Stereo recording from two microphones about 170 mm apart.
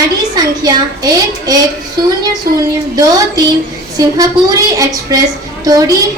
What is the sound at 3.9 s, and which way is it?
A woman's voice, 20° right (ahead or behind).